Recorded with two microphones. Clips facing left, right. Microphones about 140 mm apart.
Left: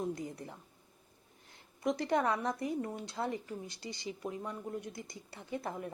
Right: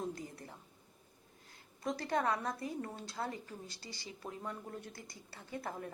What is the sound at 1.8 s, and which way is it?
A woman's voice, 20° left (ahead or behind).